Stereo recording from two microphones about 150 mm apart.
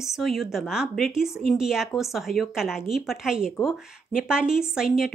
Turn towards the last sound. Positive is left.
turn(degrees=-5)  # may be behind; listen again after turning